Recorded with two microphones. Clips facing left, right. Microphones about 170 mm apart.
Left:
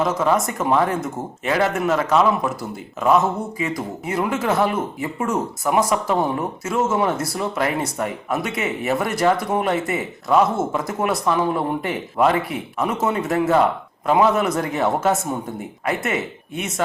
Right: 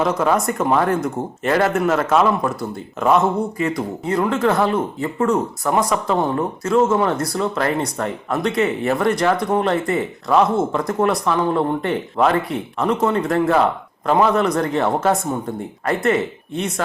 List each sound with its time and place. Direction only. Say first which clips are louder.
0.0 s speech: right 1 dB; centre (ahead or behind)